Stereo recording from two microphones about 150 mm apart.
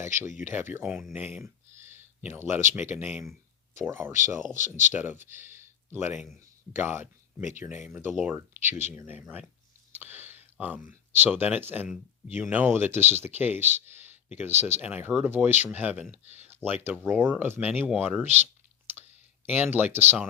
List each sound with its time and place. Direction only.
0.0 s speech: 15° right (ahead or behind)
4.4 s speech: 60° right (ahead or behind)
4.9 s speech: 15° right (ahead or behind)
8.4 s speech: 20° right (ahead or behind)
16.2 s speech: 45° right (ahead or behind)
16.5 s speech: 15° right (ahead or behind)
19.5 s speech: 10° right (ahead or behind)